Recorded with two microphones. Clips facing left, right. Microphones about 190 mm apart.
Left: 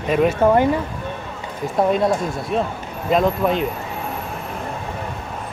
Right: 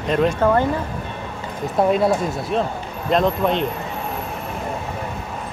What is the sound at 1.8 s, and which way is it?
Speech, centre (ahead or behind).